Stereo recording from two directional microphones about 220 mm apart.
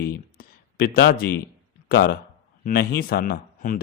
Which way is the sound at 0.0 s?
45° left (ahead or behind).